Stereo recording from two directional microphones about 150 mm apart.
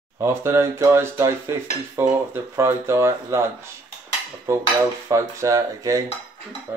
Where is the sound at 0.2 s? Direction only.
15° right (ahead or behind).